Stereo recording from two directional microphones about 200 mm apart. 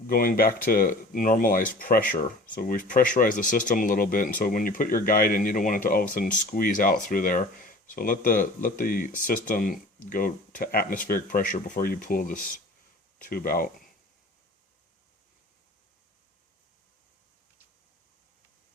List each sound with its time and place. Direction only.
0.1 s speech: 45° left (ahead or behind)